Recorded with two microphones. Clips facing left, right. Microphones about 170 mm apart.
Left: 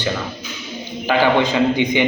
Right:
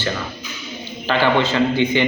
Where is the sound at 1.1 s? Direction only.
10° left (ahead or behind).